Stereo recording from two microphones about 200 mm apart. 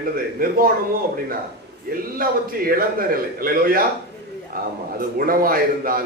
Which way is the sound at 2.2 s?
45° right (ahead or behind).